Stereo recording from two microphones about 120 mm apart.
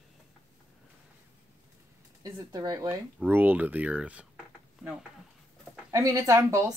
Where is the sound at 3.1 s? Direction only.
15° right (ahead or behind).